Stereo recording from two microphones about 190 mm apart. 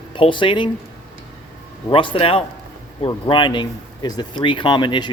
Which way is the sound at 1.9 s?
30° left (ahead or behind).